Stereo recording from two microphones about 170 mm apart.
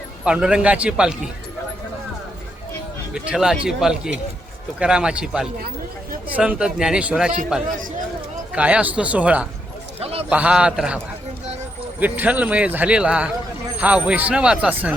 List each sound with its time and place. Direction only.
0.3 s a man's voice: 5° right (ahead or behind)
3.2 s a man's voice: 5° right (ahead or behind)
10.0 s a man's voice: 35° right (ahead or behind)
10.2 s a man's voice: 5° right (ahead or behind)